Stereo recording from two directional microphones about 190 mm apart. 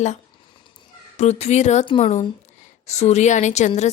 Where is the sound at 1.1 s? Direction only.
35° left (ahead or behind).